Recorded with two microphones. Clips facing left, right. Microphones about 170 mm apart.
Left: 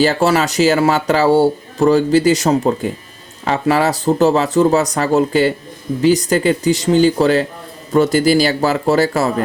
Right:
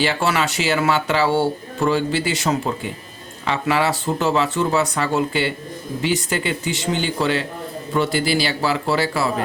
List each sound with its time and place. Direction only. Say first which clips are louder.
0.0 s a man's voice: left 6 dB; 40° left (ahead or behind)